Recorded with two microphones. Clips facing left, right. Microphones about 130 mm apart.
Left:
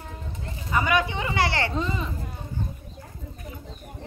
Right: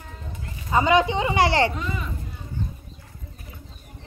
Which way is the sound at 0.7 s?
25° right (ahead or behind).